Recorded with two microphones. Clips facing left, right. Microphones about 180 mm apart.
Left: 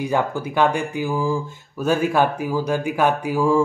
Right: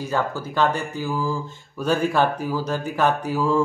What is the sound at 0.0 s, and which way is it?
Speech, 15° left (ahead or behind).